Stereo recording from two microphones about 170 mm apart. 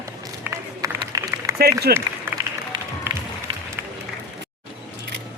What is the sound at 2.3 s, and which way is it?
Music, 15° right (ahead or behind).